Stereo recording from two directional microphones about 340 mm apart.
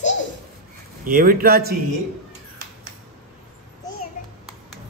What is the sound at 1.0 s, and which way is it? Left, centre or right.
Speech, right.